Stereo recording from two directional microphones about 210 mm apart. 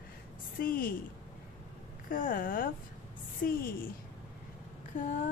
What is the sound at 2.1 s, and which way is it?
Speech, 40° left (ahead or behind).